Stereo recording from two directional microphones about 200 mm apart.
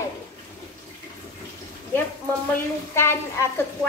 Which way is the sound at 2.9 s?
10° left (ahead or behind).